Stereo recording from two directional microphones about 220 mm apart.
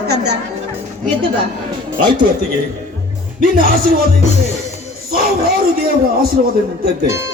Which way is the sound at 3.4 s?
40° right (ahead or behind).